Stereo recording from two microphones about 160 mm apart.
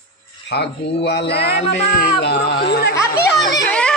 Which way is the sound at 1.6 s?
45° left (ahead or behind).